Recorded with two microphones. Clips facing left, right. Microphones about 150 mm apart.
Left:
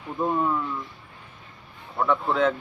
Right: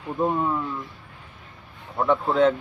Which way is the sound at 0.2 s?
15° right (ahead or behind).